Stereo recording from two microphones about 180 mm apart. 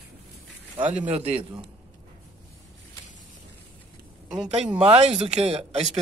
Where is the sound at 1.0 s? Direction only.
35° right (ahead or behind).